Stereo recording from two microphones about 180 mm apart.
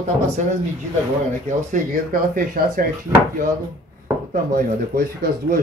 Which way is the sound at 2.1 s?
50° right (ahead or behind).